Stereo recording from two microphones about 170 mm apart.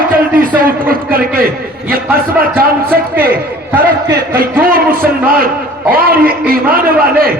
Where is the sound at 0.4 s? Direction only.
55° right (ahead or behind).